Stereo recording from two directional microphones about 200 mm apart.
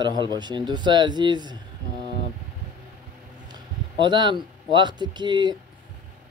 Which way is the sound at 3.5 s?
25° right (ahead or behind).